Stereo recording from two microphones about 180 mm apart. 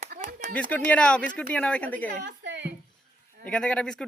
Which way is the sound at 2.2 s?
75° right (ahead or behind).